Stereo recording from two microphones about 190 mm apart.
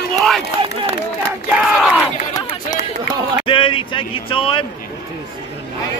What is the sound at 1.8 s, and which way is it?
Crowd, centre (ahead or behind).